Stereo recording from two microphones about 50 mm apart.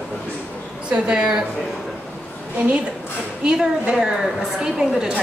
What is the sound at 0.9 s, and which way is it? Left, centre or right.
Speech, centre.